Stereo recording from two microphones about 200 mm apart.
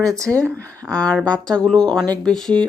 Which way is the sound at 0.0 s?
15° right (ahead or behind).